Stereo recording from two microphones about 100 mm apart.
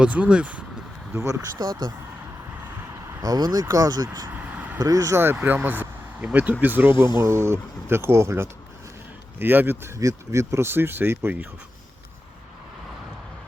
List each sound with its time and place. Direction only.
0.0 s speech: 10° right (ahead or behind)
1.1 s speech: 30° right (ahead or behind)
3.2 s speech: 40° right (ahead or behind)
4.3 s vehicle: 15° right (ahead or behind)
4.8 s speech: 35° right (ahead or behind)
10.0 s speech: 30° right (ahead or behind)